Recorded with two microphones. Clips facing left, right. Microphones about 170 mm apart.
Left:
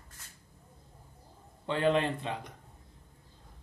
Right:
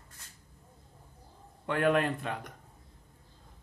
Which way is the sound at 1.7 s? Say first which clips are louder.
Right 1 dB; 60° right (ahead or behind).